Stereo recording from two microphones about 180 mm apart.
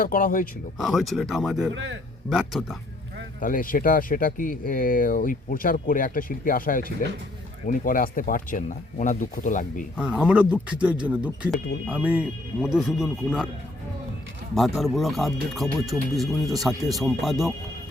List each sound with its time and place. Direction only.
0.0 s speech: 45° left (ahead or behind)
0.8 s speech: centre (ahead or behind)
1.7 s a man's voice: 90° right
2.3 s speech: 5° right (ahead or behind)
3.4 s speech: 50° left (ahead or behind)
10.0 s speech: 5° right (ahead or behind)
14.5 s speech: centre (ahead or behind)